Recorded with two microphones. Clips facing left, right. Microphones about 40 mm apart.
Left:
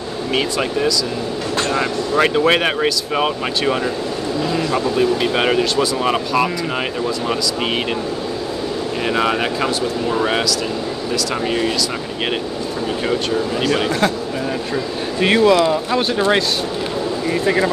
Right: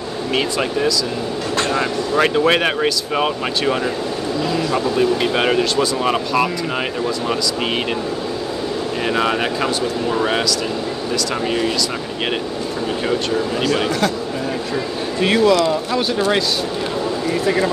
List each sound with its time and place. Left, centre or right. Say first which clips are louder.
0.3 s speech: even; centre
9.0 s speech: left 1 dB; centre
13.8 s speech: left 1 dB; left
15.2 s speech: left 1 dB; left
16.3 s speech: left 3 dB; left